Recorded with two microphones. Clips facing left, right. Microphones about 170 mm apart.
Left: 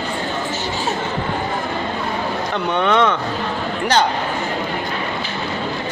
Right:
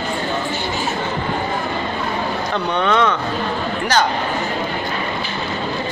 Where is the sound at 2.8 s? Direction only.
20° left (ahead or behind).